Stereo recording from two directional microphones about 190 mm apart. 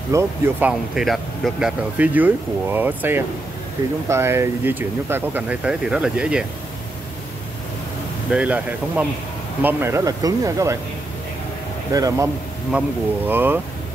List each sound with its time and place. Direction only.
0.1 s speech: 10° right (ahead or behind)
8.3 s speech: 5° right (ahead or behind)
11.9 s speech: 20° right (ahead or behind)
13.3 s speech: 10° right (ahead or behind)